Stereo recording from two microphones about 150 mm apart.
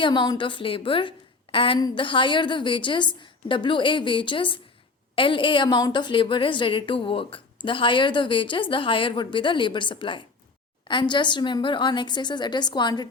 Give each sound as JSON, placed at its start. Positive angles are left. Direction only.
{"t": 0.0, "sound": "a woman's voice", "side_deg": 30}